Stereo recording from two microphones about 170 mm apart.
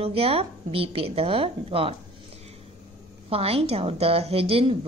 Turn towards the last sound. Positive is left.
turn(degrees=-35)  # may be behind; listen again after turning